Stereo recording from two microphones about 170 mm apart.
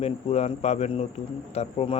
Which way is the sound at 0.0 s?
35° left (ahead or behind).